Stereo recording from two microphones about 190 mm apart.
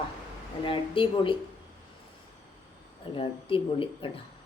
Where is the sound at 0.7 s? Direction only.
25° left (ahead or behind).